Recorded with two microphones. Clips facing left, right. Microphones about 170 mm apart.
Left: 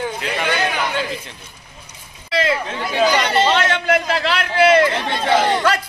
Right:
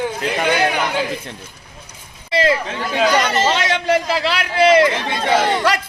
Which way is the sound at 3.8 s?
30° right (ahead or behind).